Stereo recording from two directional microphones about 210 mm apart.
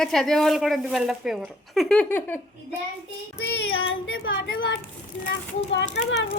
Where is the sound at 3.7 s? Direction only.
70° left (ahead or behind).